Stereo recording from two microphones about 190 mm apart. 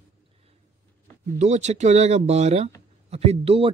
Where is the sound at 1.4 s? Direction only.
35° right (ahead or behind).